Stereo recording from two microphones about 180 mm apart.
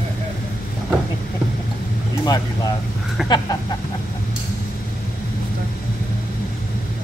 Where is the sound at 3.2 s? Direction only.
Centre (ahead or behind).